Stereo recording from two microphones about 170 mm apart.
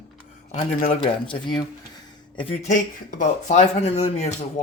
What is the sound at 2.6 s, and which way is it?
Speech, 50° left (ahead or behind).